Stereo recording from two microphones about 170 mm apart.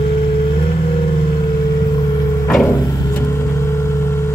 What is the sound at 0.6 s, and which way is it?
Vehicle, 30° left (ahead or behind).